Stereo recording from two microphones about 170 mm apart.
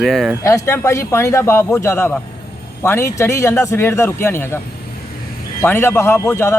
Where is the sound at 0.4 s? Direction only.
15° left (ahead or behind).